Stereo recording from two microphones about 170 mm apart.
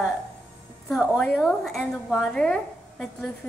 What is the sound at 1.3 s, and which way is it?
A woman's voice, centre (ahead or behind).